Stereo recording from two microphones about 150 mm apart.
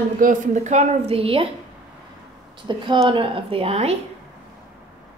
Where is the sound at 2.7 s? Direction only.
35° right (ahead or behind).